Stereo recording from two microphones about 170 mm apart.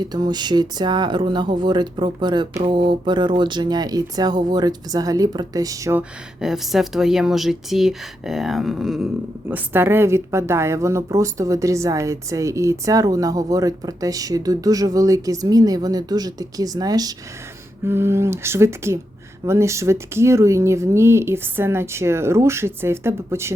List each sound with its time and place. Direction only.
0.0 s a woman's voice: 25° right (ahead or behind)
6.0 s speech: 5° right (ahead or behind)
9.5 s a woman's voice: 15° right (ahead or behind)